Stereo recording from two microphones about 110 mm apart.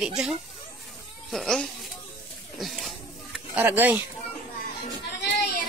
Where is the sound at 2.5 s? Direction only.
Centre (ahead or behind).